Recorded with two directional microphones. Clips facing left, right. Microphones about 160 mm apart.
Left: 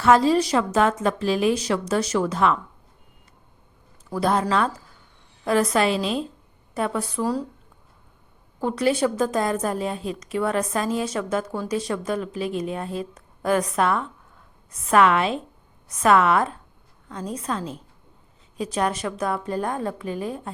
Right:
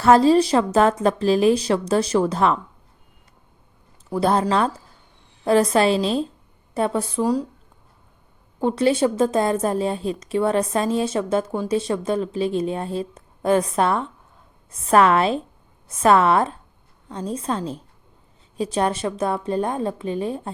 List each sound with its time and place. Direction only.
0.0 s a woman's voice: 35° right (ahead or behind)
4.1 s a woman's voice: 30° right (ahead or behind)
8.6 s a woman's voice: 25° right (ahead or behind)